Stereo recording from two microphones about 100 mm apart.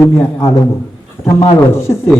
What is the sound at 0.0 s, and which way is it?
A man's voice, 25° left (ahead or behind).